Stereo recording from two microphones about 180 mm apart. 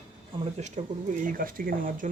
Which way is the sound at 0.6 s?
40° right (ahead or behind).